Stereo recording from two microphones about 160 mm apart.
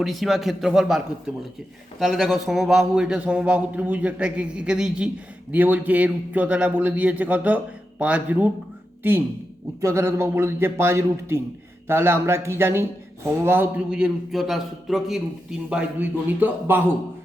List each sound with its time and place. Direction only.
0.0 s a man's voice: centre (ahead or behind)
9.8 s a man's voice: 15° right (ahead or behind)